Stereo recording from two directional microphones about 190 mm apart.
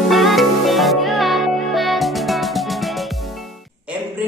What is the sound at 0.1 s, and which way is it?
Music, centre (ahead or behind).